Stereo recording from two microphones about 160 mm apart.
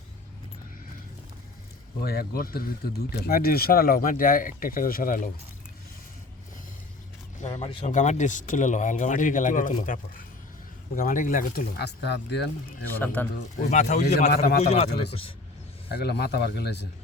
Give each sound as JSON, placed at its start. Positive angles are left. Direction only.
{"t": 2.0, "sound": "speech", "side_deg": 75}
{"t": 7.4, "sound": "speech", "side_deg": 45}
{"t": 13.2, "sound": "speech", "side_deg": 10}
{"t": 13.7, "sound": "speech", "side_deg": 50}
{"t": 14.3, "sound": "speech", "side_deg": 75}
{"t": 14.6, "sound": "speech", "side_deg": 40}
{"t": 16.0, "sound": "speech", "side_deg": 85}